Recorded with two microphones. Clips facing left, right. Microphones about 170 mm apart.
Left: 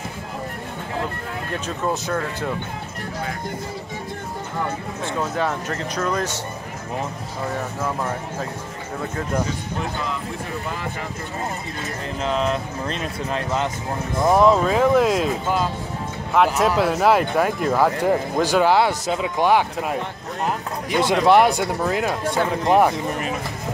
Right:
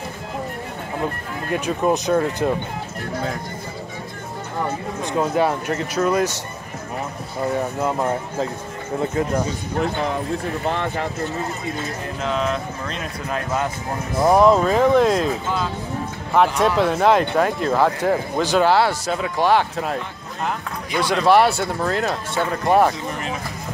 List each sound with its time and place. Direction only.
1.8 s speech: 20° right (ahead or behind)
5.0 s speech: 10° right (ahead or behind)
7.8 s speech: 25° right (ahead or behind)
10.7 s speech: 65° right (ahead or behind)
12.2 s speech: centre (ahead or behind)
16.3 s speech: 5° left (ahead or behind)
21.0 s speech: 20° left (ahead or behind)